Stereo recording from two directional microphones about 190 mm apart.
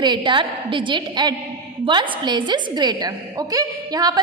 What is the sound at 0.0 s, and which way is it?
A woman's voice, 25° right (ahead or behind).